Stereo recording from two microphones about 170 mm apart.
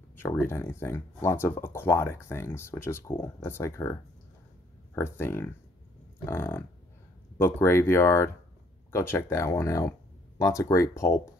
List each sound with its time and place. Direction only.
0.1 s speech: 15° left (ahead or behind)
4.9 s speech: 15° left (ahead or behind)